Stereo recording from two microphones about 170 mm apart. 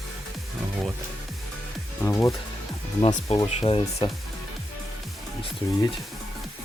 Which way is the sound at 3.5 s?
35° left (ahead or behind).